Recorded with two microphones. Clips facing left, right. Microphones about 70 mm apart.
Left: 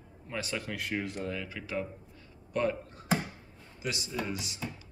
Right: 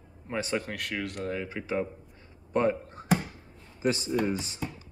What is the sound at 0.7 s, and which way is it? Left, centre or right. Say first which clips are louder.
Speech: right 1 dB; right.